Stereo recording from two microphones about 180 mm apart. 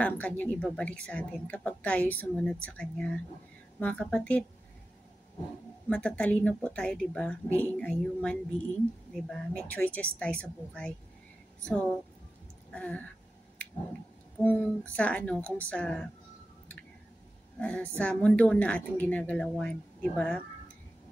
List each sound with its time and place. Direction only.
0.0 s a woman's voice: 10° left (ahead or behind)
5.9 s a woman's voice: 5° left (ahead or behind)
9.6 s a woman's voice: 10° left (ahead or behind)
14.4 s a woman's voice: 10° left (ahead or behind)
17.6 s a woman's voice: 5° left (ahead or behind)